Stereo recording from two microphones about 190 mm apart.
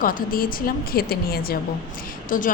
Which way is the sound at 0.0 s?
50° left (ahead or behind).